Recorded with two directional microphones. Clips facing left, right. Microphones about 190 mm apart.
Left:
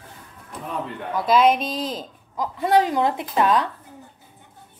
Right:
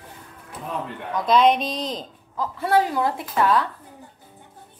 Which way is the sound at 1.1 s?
5° left (ahead or behind).